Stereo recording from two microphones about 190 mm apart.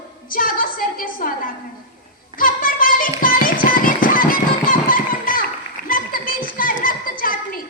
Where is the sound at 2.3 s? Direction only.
45° left (ahead or behind).